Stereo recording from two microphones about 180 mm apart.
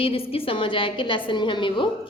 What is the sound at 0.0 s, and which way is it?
A woman's voice, 30° left (ahead or behind).